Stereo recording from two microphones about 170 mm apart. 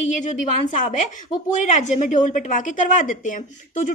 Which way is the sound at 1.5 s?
45° left (ahead or behind).